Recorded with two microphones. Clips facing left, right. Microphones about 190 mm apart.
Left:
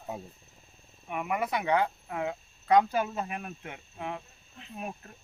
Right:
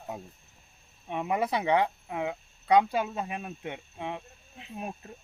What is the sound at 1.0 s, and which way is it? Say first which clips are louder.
Speech: right 2 dB; 25° right (ahead or behind).